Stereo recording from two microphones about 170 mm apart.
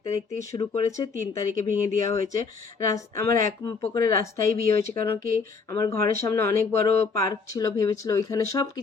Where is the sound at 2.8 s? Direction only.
20° left (ahead or behind).